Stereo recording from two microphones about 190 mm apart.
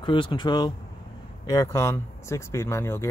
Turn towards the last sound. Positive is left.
turn(degrees=15)  # may be behind; listen again after turning